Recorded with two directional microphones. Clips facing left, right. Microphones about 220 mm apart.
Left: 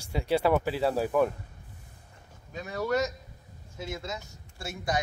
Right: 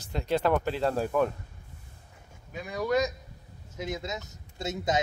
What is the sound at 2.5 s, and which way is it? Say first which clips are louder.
A man's voice: right 1 dB; 15° right (ahead or behind).